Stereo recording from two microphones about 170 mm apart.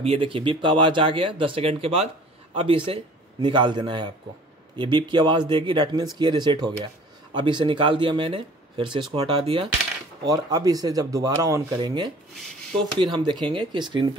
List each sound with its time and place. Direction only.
0.0 s speech: 35° right (ahead or behind)
10.2 s speech: 20° right (ahead or behind)